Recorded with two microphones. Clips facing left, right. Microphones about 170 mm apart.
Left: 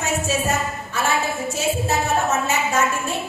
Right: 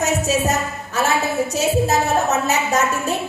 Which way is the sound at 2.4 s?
40° right (ahead or behind).